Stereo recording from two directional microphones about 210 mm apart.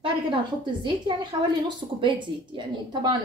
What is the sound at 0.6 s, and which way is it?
A woman's voice, 20° right (ahead or behind).